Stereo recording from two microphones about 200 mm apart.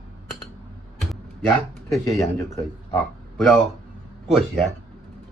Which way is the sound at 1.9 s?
15° left (ahead or behind).